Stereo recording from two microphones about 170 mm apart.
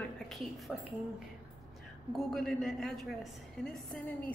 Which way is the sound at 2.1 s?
Centre (ahead or behind).